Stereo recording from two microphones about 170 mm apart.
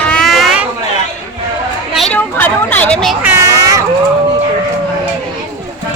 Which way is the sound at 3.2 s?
15° right (ahead or behind).